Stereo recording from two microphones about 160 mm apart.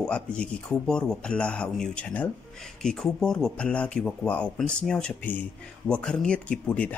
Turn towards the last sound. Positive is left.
turn(degrees=10)  # may be behind; listen again after turning